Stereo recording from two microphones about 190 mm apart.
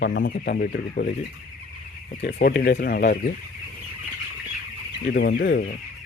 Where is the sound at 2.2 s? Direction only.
60° left (ahead or behind).